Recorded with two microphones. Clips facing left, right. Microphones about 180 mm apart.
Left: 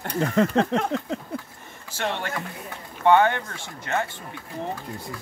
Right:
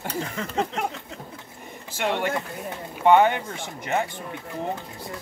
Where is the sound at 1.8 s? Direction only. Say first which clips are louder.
Right 3 dB; 15° right (ahead or behind).